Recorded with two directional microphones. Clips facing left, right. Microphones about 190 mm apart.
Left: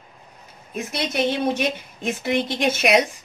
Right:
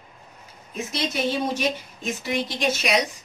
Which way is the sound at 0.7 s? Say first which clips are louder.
Left 3 dB; 60° left (ahead or behind).